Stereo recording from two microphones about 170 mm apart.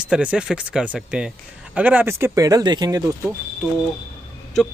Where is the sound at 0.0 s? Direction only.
5° right (ahead or behind); by 3.3 s 20° right (ahead or behind).